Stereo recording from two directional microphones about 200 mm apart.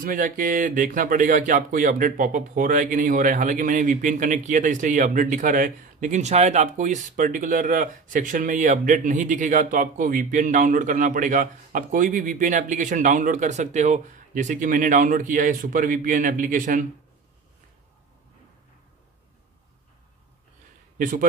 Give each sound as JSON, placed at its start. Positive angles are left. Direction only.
{"t": 0.0, "sound": "speech", "side_deg": -40}
{"t": 21.0, "sound": "a man's voice", "side_deg": -45}